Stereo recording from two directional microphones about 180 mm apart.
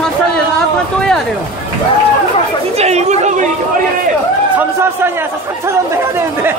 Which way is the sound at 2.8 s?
35° right (ahead or behind).